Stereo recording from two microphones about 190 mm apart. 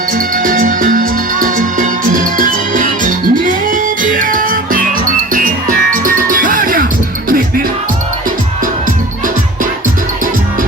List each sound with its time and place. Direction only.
0.1 s music: 45° right (ahead or behind)